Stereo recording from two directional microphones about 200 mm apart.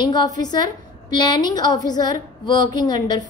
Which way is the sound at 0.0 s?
20° left (ahead or behind).